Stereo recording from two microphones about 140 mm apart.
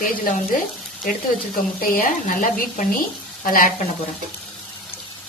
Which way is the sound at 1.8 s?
90° left.